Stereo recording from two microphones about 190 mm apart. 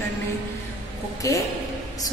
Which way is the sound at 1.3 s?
15° left (ahead or behind).